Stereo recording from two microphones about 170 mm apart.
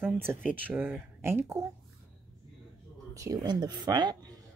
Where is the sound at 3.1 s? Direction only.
20° right (ahead or behind).